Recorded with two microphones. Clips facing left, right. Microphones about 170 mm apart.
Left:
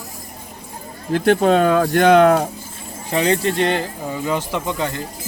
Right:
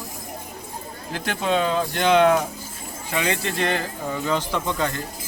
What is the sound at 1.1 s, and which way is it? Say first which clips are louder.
Speech: left 9 dB; 40° left (ahead or behind).